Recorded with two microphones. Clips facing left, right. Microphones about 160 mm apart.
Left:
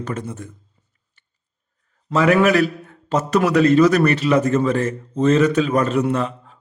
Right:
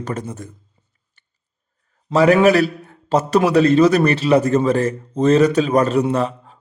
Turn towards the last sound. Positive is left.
turn(degrees=-35)  # may be behind; listen again after turning